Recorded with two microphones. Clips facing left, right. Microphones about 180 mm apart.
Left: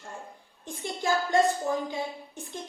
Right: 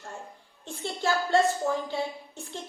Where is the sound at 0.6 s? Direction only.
15° left (ahead or behind).